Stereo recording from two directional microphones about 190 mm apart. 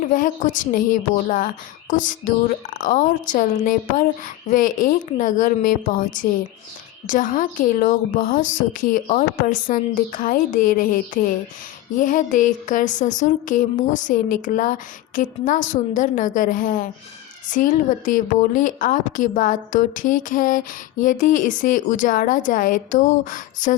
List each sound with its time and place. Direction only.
0.1 s a woman's voice: 45° left (ahead or behind)